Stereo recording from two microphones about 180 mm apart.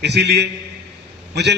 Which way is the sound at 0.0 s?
70° right (ahead or behind).